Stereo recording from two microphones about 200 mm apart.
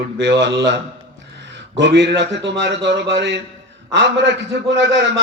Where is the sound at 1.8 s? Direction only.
60° right (ahead or behind).